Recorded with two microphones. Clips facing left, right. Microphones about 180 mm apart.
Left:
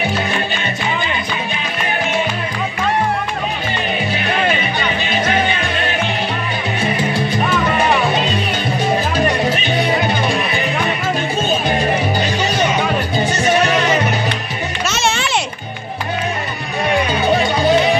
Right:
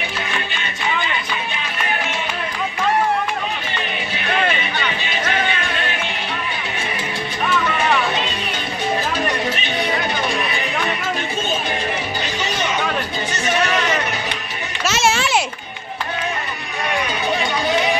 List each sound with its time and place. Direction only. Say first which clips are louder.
12.2 s music: left 6 dB; 35° left (ahead or behind)
14.9 s music: right 2 dB; 5° right (ahead or behind)
17.3 s music: left 7 dB; 30° left (ahead or behind)